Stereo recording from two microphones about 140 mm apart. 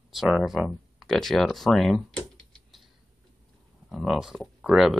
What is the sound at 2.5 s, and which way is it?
Typing, centre (ahead or behind).